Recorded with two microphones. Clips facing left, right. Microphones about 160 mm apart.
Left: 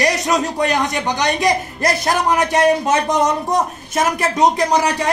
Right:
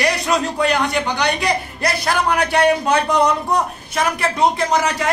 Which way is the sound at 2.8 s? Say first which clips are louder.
Even; 20° left (ahead or behind).